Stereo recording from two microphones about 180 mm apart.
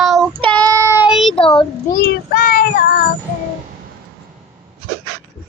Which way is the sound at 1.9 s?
60° left (ahead or behind).